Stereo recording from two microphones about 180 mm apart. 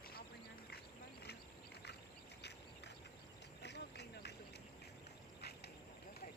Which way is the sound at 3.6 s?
70° left (ahead or behind).